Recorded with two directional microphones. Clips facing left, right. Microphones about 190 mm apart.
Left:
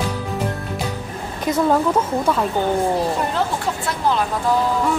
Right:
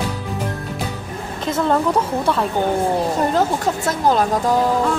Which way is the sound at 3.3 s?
45° right (ahead or behind).